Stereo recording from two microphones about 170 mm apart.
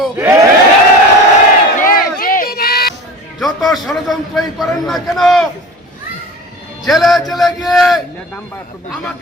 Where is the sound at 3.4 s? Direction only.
Centre (ahead or behind).